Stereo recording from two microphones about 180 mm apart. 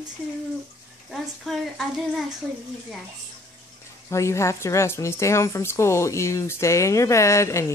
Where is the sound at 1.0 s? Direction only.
Centre (ahead or behind).